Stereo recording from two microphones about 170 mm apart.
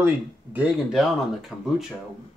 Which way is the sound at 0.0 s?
10° right (ahead or behind).